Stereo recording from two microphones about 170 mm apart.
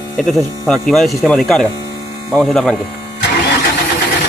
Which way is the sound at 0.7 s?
Centre (ahead or behind).